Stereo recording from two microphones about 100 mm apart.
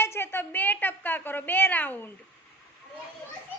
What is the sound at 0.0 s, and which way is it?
A woman's voice, 25° left (ahead or behind).